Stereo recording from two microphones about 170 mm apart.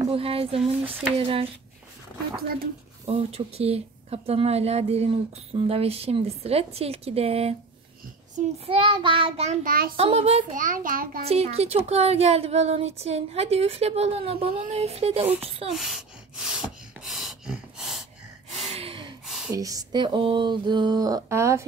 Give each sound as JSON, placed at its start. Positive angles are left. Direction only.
{"t": 0.1, "sound": "speech", "side_deg": -35}
{"t": 3.1, "sound": "speech", "side_deg": -35}
{"t": 8.6, "sound": "speech", "side_deg": -30}
{"t": 9.7, "sound": "a child's voice", "side_deg": -60}
{"t": 9.9, "sound": "speech", "side_deg": -35}
{"t": 10.5, "sound": "a child's voice", "side_deg": -50}
{"t": 11.2, "sound": "speech", "side_deg": -35}
{"t": 15.7, "sound": "a sound", "side_deg": 0}
{"t": 18.7, "sound": "gasp", "side_deg": -35}
{"t": 19.2, "sound": "a sound", "side_deg": 0}
{"t": 19.5, "sound": "a sound", "side_deg": -20}